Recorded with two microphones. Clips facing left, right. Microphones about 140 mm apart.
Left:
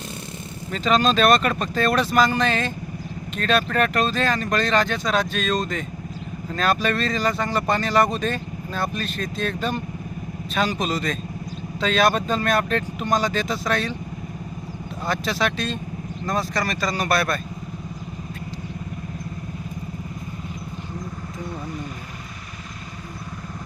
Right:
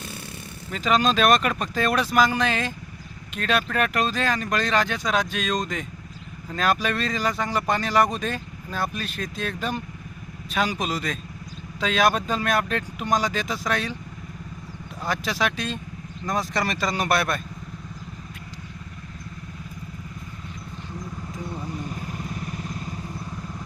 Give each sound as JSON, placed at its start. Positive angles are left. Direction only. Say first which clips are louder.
{"t": 0.7, "sound": "speech", "louder": "left 2 dB", "side_deg": -10}
{"t": 15.0, "sound": "speech", "louder": "left 2 dB", "side_deg": -10}